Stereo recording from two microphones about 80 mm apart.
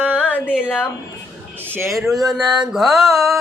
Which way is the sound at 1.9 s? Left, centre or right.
Centre.